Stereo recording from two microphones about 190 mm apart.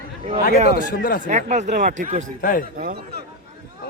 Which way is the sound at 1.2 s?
35° right (ahead or behind).